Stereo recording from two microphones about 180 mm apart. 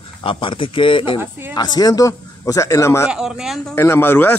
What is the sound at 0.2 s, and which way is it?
A man's voice, 30° left (ahead or behind).